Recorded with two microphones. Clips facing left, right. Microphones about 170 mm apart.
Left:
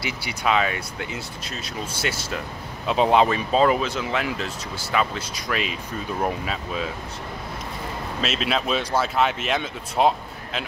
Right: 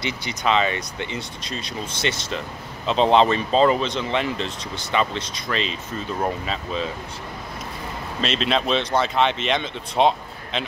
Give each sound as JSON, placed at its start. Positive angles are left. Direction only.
{"t": 0.0, "sound": "speech", "side_deg": 10}
{"t": 8.2, "sound": "speech", "side_deg": 5}